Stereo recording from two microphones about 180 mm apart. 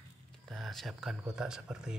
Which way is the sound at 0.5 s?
Centre (ahead or behind).